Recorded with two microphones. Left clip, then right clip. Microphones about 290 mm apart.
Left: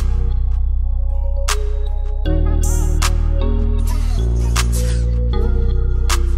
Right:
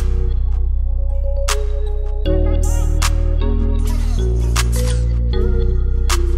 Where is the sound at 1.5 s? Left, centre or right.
Centre.